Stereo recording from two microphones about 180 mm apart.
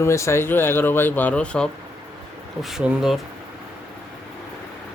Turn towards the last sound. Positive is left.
turn(degrees=-5)  # may be behind; listen again after turning